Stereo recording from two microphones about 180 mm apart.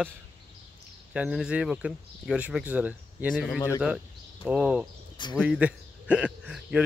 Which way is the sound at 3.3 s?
5° left (ahead or behind).